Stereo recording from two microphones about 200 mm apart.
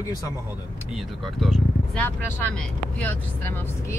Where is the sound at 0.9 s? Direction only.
Centre (ahead or behind).